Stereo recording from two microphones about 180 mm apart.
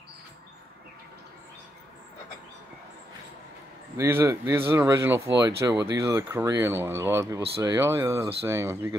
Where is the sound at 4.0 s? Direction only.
15° right (ahead or behind).